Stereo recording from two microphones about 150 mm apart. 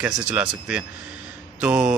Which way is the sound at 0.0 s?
10° right (ahead or behind).